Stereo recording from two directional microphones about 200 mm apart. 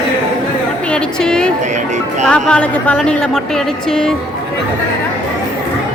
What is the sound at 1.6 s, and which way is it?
Music, 35° right (ahead or behind).